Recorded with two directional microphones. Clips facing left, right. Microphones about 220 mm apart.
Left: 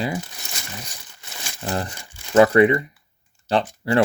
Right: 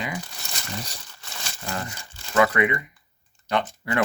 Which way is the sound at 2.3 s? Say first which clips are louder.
Left 7 dB; 35° left (ahead or behind).